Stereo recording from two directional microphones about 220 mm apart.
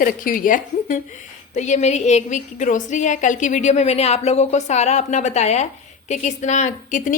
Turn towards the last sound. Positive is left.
turn(degrees=35)  # may be behind; listen again after turning